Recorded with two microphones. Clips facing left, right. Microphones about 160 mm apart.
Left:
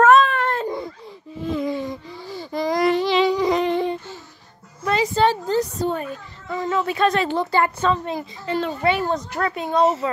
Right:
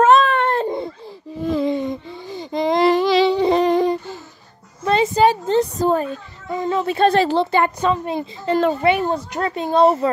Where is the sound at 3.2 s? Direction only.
30° right (ahead or behind).